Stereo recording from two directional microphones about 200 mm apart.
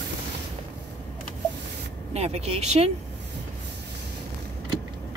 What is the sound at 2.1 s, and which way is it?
Speech, 30° right (ahead or behind).